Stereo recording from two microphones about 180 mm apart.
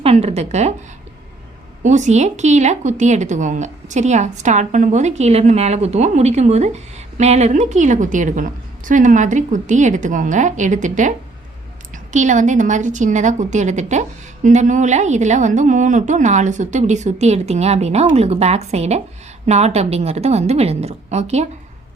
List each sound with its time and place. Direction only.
0.0 s a woman's voice: 35° right (ahead or behind)
1.8 s a woman's voice: 40° right (ahead or behind)
12.1 s a woman's voice: 45° right (ahead or behind)